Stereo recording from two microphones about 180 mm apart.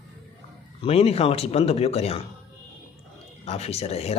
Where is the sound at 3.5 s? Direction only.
35° left (ahead or behind).